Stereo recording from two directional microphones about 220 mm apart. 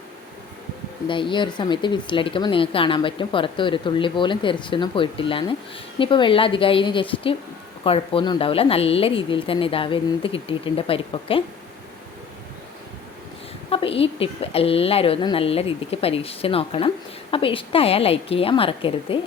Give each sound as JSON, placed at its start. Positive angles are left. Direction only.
{"t": 1.0, "sound": "speech", "side_deg": 20}
{"t": 13.7, "sound": "speech", "side_deg": 25}